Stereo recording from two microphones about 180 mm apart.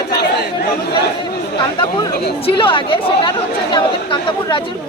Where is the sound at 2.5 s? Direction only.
30° left (ahead or behind).